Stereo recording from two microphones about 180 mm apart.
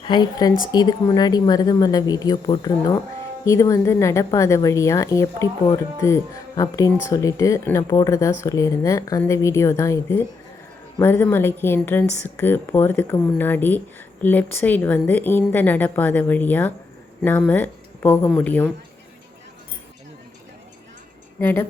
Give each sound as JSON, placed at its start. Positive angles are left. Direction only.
{"t": 0.0, "sound": "speech", "side_deg": 25}
{"t": 12.0, "sound": "speech", "side_deg": 40}
{"t": 12.4, "sound": "speech", "side_deg": 10}
{"t": 21.4, "sound": "speech", "side_deg": 10}